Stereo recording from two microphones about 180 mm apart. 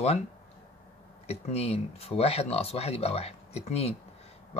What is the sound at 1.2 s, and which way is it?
Speech, 35° left (ahead or behind).